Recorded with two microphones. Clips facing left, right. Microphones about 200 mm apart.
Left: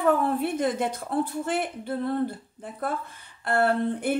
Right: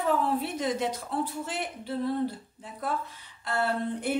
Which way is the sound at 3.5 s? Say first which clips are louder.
Left 5 dB; 55° left (ahead or behind).